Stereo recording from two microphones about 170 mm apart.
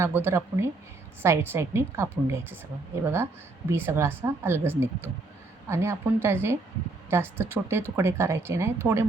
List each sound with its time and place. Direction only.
0.0 s a woman's voice: 15° right (ahead or behind)